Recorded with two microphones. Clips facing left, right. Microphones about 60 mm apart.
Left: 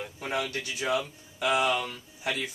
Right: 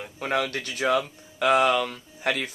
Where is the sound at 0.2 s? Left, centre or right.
Right.